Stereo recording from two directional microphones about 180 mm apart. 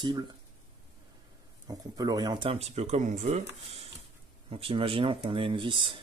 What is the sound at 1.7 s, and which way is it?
Speech, 20° right (ahead or behind).